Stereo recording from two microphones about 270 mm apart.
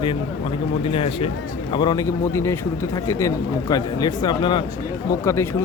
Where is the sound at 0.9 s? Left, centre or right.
Centre.